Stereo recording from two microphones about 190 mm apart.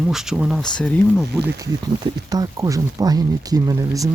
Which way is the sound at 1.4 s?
15° right (ahead or behind).